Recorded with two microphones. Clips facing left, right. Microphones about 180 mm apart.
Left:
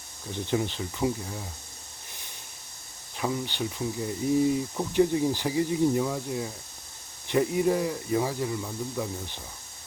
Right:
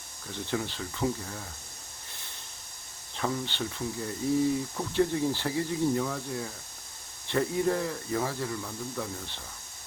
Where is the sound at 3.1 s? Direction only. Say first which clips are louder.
Left 2 dB; 10° left (ahead or behind).